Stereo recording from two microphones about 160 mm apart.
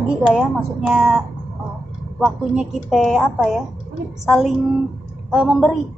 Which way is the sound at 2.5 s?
Centre (ahead or behind).